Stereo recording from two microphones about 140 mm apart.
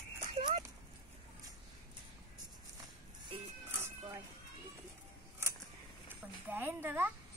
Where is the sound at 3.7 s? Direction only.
20° right (ahead or behind).